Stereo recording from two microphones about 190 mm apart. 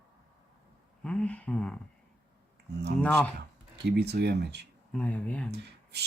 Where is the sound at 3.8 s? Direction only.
60° right (ahead or behind).